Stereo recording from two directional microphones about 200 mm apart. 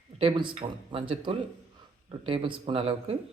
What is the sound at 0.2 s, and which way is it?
Speech, 25° right (ahead or behind).